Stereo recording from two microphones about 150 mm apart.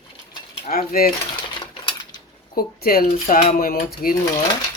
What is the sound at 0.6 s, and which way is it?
Speech, 75° left (ahead or behind).